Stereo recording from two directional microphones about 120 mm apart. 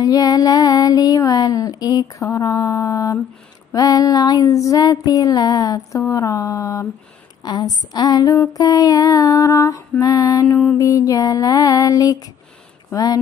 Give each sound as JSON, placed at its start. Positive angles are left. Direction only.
{"t": 0.0, "sound": "child singing", "side_deg": 30}
{"t": 3.7, "sound": "a sound", "side_deg": 30}
{"t": 7.4, "sound": "child singing", "side_deg": 35}